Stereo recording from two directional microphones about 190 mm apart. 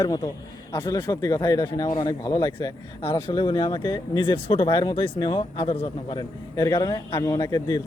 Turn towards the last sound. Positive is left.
turn(degrees=20)  # may be behind; listen again after turning